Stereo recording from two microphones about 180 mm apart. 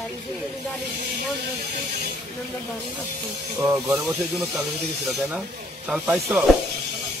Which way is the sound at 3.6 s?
10° right (ahead or behind).